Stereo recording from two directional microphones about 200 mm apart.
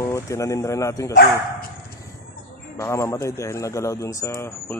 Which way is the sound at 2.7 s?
15° left (ahead or behind).